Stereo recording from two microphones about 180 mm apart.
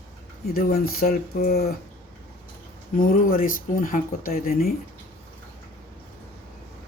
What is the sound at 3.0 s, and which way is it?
Speech, 50° left (ahead or behind).